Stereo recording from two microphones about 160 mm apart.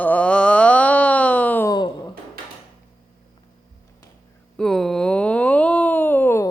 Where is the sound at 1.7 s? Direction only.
25° left (ahead or behind).